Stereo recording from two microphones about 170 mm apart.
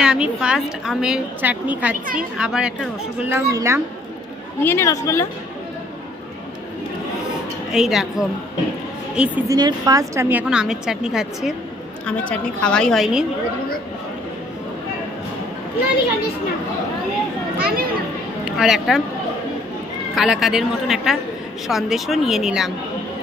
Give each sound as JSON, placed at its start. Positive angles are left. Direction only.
{"t": 0.0, "sound": "a woman's voice", "side_deg": -5}
{"t": 4.6, "sound": "speech", "side_deg": 15}
{"t": 7.7, "sound": "a woman's voice", "side_deg": -5}
{"t": 9.5, "sound": "a woman's voice", "side_deg": -25}
{"t": 17.6, "sound": "a sound", "side_deg": -60}
{"t": 18.4, "sound": "speech", "side_deg": 0}
{"t": 20.2, "sound": "a woman's voice", "side_deg": 0}